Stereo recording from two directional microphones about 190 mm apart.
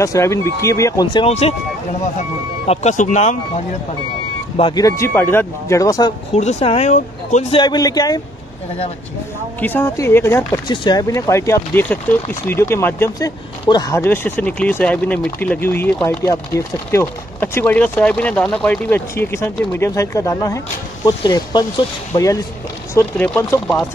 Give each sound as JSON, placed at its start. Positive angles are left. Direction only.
{"t": 0.0, "sound": "speech", "side_deg": 15}
{"t": 2.6, "sound": "speech", "side_deg": 35}
{"t": 4.6, "sound": "speech", "side_deg": 25}
{"t": 6.3, "sound": "speech", "side_deg": 35}
{"t": 7.5, "sound": "speech", "side_deg": 20}
{"t": 9.6, "sound": "speech", "side_deg": 10}
{"t": 10.7, "sound": "speech", "side_deg": 25}